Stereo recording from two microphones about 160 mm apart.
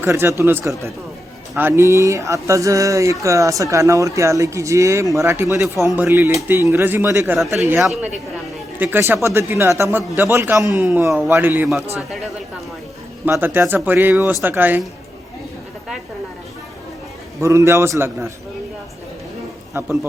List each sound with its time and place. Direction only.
0.0 s speech: 15° right (ahead or behind)
7.8 s speech: centre (ahead or behind)
8.8 s speech: 10° right (ahead or behind)
11.9 s speech: centre (ahead or behind)
13.2 s speech: 15° right (ahead or behind)
17.4 s speech: 20° right (ahead or behind)
19.8 s speech: 15° right (ahead or behind)